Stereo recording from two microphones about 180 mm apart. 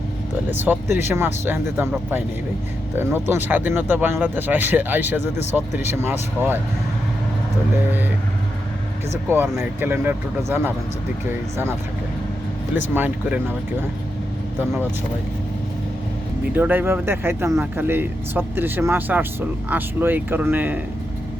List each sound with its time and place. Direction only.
0.5 s speech: 10° right (ahead or behind)
9.3 s speech: 10° right (ahead or behind)
12.9 s speech: 10° right (ahead or behind)
16.6 s speech: 10° right (ahead or behind)